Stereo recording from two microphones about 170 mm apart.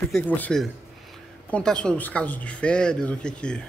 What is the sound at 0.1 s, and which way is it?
Speech, 10° left (ahead or behind).